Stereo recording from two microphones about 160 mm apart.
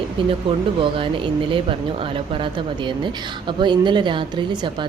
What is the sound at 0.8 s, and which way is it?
A woman's voice, 35° right (ahead or behind).